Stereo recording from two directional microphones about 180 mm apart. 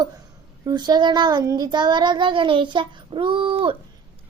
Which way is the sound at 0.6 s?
25° right (ahead or behind).